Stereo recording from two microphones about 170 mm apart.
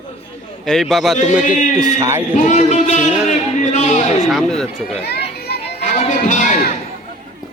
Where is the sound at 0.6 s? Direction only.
Centre (ahead or behind).